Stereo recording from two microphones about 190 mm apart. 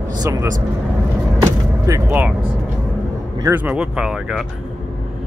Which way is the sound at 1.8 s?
10° right (ahead or behind).